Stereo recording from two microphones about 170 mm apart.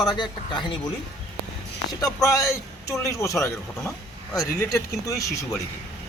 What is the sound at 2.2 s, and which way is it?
A man's voice, 20° left (ahead or behind).